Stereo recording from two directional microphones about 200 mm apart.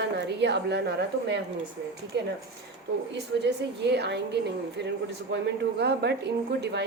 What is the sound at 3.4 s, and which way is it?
A woman's voice, 55° right (ahead or behind).